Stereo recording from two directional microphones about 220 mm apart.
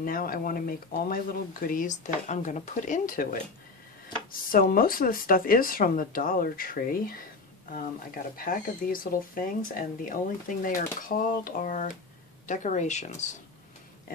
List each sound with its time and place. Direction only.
0.0 s speech: 40° left (ahead or behind)
8.4 s speech: 40° left (ahead or behind)